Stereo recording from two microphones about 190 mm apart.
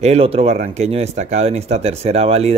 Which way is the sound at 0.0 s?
35° right (ahead or behind).